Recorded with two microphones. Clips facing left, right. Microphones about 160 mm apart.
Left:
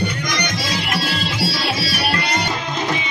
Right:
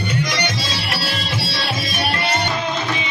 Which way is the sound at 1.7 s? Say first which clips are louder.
Left 1 dB; 20° right (ahead or behind).